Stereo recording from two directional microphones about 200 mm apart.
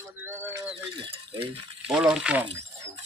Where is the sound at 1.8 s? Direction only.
5° right (ahead or behind).